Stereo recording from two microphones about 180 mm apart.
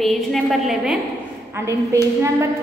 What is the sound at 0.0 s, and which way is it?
Speech, centre (ahead or behind).